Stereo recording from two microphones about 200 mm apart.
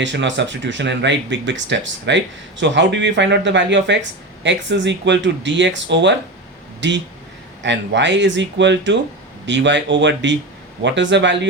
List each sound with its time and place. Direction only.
0.0 s speech: 65° right (ahead or behind)